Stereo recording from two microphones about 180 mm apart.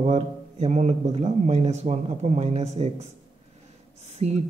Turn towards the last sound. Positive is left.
turn(degrees=-40)  # may be behind; listen again after turning